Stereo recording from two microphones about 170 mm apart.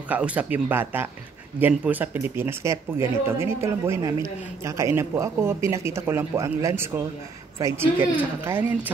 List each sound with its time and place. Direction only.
0.1 s speech: 10° right (ahead or behind)